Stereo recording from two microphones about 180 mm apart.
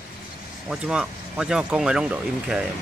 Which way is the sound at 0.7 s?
5° right (ahead or behind).